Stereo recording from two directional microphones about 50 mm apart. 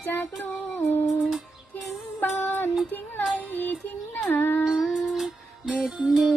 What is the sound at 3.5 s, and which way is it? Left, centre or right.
Music, left.